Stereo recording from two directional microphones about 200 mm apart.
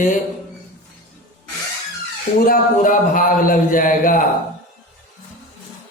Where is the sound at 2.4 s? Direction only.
45° left (ahead or behind).